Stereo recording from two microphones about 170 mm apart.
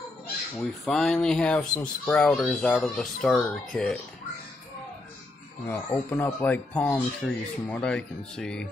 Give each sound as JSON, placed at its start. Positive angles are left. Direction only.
{"t": 0.6, "sound": "speech", "side_deg": 5}
{"t": 5.7, "sound": "speech", "side_deg": 10}